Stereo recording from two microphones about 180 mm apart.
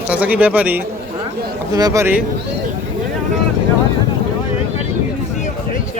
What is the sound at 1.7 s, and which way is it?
Speech, 20° right (ahead or behind).